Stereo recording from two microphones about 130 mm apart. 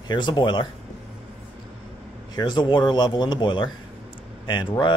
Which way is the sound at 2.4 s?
35° left (ahead or behind).